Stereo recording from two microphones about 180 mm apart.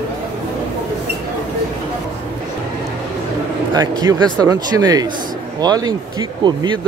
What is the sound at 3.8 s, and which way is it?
Speech, 20° right (ahead or behind).